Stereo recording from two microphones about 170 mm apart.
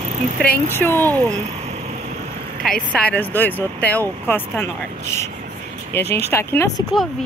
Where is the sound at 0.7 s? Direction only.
15° left (ahead or behind).